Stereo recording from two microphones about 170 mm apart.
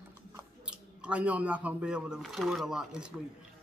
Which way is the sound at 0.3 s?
10° right (ahead or behind).